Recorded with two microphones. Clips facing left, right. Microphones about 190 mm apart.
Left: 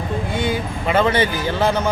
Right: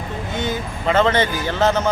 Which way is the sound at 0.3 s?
10° left (ahead or behind).